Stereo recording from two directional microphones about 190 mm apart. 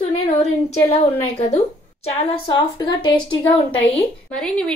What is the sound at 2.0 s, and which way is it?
A woman's voice, 25° left (ahead or behind).